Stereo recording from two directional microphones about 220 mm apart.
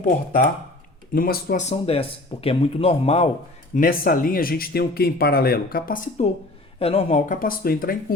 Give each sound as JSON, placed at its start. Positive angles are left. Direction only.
{"t": 0.0, "sound": "speech", "side_deg": 40}
{"t": 1.6, "sound": "speech", "side_deg": 30}
{"t": 3.8, "sound": "speech", "side_deg": 40}
{"t": 6.7, "sound": "speech", "side_deg": 25}